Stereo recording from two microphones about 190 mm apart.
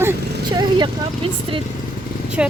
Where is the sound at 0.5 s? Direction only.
25° right (ahead or behind).